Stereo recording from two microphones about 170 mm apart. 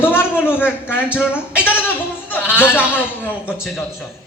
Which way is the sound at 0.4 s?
10° left (ahead or behind).